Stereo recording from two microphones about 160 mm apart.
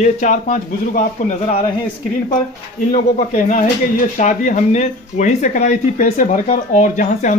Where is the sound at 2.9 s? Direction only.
55° left (ahead or behind).